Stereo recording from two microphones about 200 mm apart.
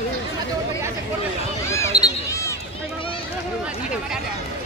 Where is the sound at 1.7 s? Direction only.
15° left (ahead or behind).